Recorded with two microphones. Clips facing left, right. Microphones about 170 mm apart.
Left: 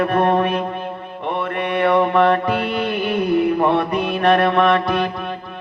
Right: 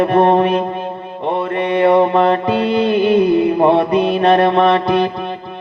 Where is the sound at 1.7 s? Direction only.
30° right (ahead or behind).